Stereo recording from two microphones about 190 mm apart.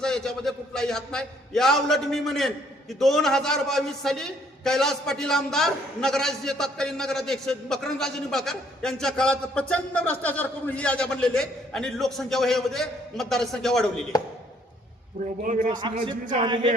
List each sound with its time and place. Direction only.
0.0 s a man's voice: 5° left (ahead or behind)
15.4 s a man's voice: 45° right (ahead or behind)
16.4 s a sound: 25° right (ahead or behind)